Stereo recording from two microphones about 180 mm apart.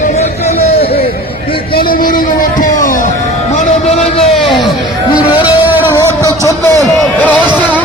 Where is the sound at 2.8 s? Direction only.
45° left (ahead or behind).